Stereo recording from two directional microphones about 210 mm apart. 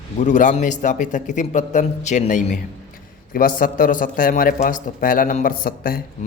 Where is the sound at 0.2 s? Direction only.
35° left (ahead or behind).